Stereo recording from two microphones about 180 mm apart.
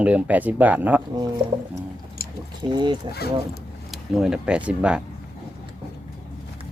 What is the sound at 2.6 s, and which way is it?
Speech, 25° right (ahead or behind).